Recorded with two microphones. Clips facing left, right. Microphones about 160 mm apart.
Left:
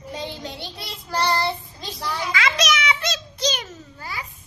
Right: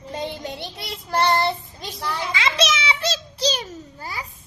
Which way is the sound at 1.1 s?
20° right (ahead or behind).